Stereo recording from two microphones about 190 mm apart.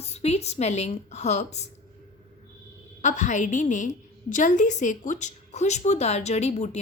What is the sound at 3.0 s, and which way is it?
Speech, 40° left (ahead or behind).